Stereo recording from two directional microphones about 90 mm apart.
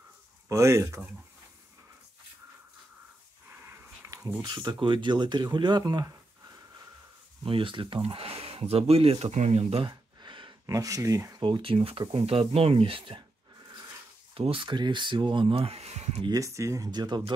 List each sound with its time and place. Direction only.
0.5 s speech: 35° right (ahead or behind)
3.6 s a sound: 25° right (ahead or behind)
4.4 s speech: 55° right (ahead or behind)
6.0 s a sound: 40° right (ahead or behind)
7.4 s speech: 75° right (ahead or behind); by 9.8 s 90° right
9.8 s gasp: 60° right (ahead or behind)
10.7 s speech: 40° right (ahead or behind)
11.4 s speech: 75° right (ahead or behind)
13.6 s dog: 50° right (ahead or behind)
14.3 s speech: 80° right
16.3 s speech: 35° right (ahead or behind)
16.9 s speech: 50° right (ahead or behind)